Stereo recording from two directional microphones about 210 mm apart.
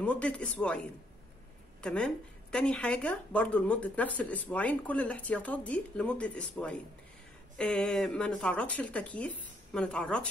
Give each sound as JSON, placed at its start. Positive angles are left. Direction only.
{"t": 0.0, "sound": "speech", "side_deg": 5}